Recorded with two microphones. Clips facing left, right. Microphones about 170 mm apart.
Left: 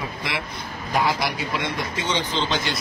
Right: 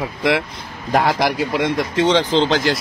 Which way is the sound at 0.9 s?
85° right.